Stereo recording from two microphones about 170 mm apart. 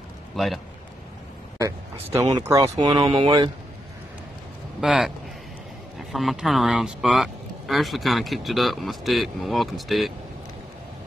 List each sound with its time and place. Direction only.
0.4 s speech: centre (ahead or behind)
2.3 s speech: 20° right (ahead or behind)
4.7 s speech: centre (ahead or behind)
6.1 s speech: centre (ahead or behind)